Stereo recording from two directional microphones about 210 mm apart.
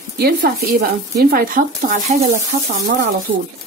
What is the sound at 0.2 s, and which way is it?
Speech, 50° right (ahead or behind).